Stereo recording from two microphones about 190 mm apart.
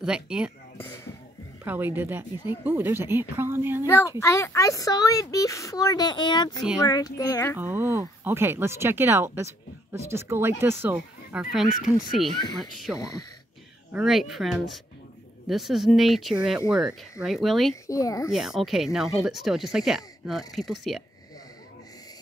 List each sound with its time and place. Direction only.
0.0 s speech: 5° right (ahead or behind)
0.7 s a sound: 15° left (ahead or behind)
1.6 s speech: 10° right (ahead or behind)
3.8 s speech: 15° left (ahead or behind)
7.5 s speech: 10° right (ahead or behind)
13.9 s speech: centre (ahead or behind)
17.8 s speech: 15° left (ahead or behind)
18.3 s speech: centre (ahead or behind)